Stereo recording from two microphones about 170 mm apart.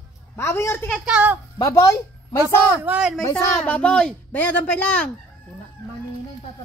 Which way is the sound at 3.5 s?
5° left (ahead or behind).